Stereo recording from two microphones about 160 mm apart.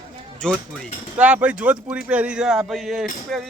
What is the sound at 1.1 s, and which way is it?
A man's voice, 10° right (ahead or behind).